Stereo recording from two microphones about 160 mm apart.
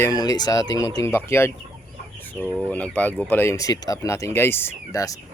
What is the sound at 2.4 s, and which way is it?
Speech, 15° right (ahead or behind).